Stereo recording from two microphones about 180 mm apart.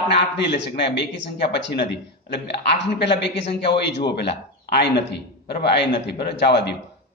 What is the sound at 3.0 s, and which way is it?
Speech, 70° left (ahead or behind).